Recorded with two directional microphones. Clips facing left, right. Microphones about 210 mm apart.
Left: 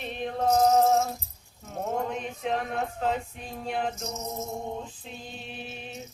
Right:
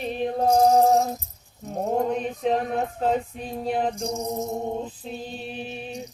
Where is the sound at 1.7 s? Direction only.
35° right (ahead or behind).